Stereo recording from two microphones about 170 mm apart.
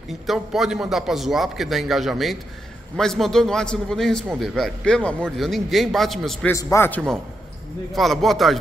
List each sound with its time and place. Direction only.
0.3 s a man's voice: 5° right (ahead or behind)
6.5 s a man's voice: 15° left (ahead or behind)
7.9 s a man's voice: centre (ahead or behind)